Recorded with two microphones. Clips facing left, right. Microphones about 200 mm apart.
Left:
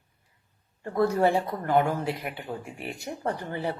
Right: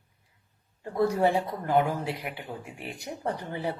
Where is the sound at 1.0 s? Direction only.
15° right (ahead or behind).